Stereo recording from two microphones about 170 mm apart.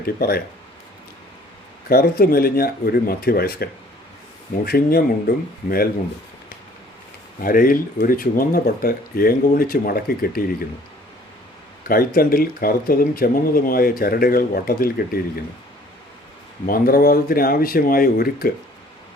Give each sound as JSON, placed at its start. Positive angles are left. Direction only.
{"t": 0.0, "sound": "speech", "side_deg": 65}
{"t": 1.9, "sound": "speech", "side_deg": 65}
{"t": 7.4, "sound": "speech", "side_deg": 55}
{"t": 11.9, "sound": "speech", "side_deg": 60}
{"t": 16.6, "sound": "speech", "side_deg": 60}